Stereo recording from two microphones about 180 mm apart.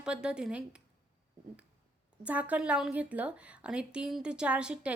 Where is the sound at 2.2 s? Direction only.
10° right (ahead or behind).